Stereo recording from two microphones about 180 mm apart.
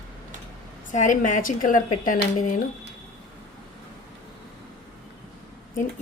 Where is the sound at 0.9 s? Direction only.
45° left (ahead or behind).